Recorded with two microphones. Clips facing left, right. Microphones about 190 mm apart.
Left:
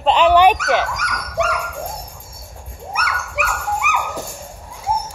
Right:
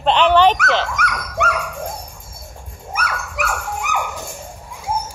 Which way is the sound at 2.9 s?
45° right (ahead or behind).